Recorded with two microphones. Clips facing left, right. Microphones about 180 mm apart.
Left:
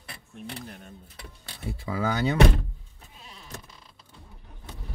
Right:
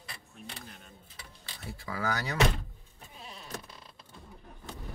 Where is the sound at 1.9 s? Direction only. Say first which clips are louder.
Left 7 dB; 25° left (ahead or behind).